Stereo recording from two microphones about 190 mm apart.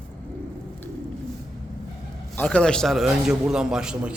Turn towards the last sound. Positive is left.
turn(degrees=-5)  # may be behind; listen again after turning